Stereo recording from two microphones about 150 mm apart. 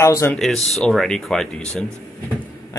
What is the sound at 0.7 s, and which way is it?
Speech, centre (ahead or behind).